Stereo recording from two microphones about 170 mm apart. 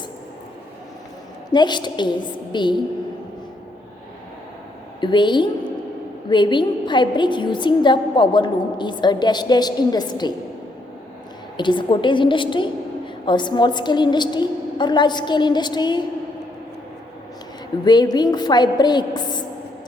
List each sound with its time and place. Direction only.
1.5 s a woman's voice: 25° left (ahead or behind)
4.9 s a woman's voice: 25° left (ahead or behind)
11.5 s a woman's voice: 25° left (ahead or behind)
17.8 s a woman's voice: 25° left (ahead or behind)